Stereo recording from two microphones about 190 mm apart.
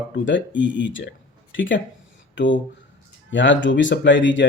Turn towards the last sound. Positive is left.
turn(degrees=75)  # may be behind; listen again after turning